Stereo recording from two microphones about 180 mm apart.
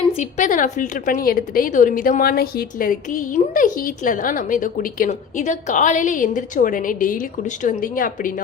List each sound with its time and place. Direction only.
0.0 s a woman's voice: 40° left (ahead or behind)